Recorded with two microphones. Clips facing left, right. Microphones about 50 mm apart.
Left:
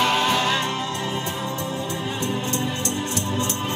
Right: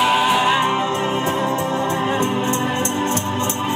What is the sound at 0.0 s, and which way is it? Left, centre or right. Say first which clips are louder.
Music: right 4 dB; centre.